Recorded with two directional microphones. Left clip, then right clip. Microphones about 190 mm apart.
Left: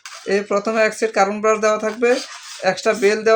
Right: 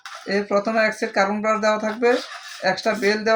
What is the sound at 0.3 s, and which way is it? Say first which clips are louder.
Speech: left 2 dB; 50° left (ahead or behind).